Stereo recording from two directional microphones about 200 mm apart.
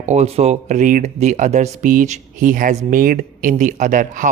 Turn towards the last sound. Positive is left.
turn(degrees=-40)  # may be behind; listen again after turning